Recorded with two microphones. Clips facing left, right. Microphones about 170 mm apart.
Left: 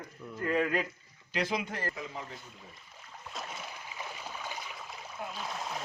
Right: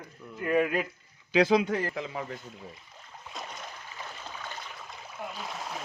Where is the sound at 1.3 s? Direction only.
90° right.